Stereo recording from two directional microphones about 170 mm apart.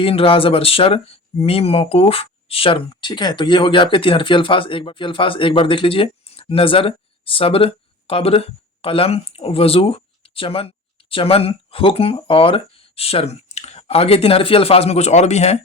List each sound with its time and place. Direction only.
0.0 s speech: 35° left (ahead or behind)